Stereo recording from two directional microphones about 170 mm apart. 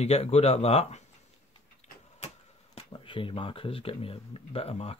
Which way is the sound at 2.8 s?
30° left (ahead or behind).